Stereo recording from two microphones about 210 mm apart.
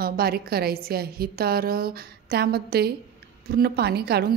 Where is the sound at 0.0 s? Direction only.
45° right (ahead or behind).